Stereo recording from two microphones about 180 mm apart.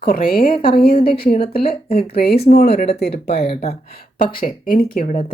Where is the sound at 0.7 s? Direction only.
55° left (ahead or behind).